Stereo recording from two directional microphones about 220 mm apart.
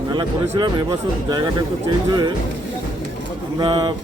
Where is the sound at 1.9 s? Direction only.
20° right (ahead or behind).